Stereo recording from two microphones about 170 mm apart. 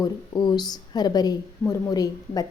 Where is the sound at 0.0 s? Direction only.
25° left (ahead or behind).